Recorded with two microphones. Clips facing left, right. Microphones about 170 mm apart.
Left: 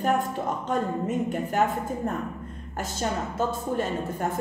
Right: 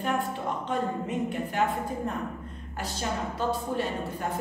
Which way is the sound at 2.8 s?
45° left (ahead or behind).